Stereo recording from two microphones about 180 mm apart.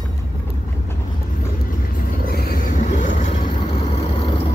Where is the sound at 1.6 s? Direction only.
50° left (ahead or behind).